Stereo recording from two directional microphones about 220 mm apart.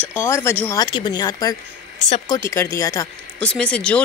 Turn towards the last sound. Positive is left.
turn(degrees=5)  # may be behind; listen again after turning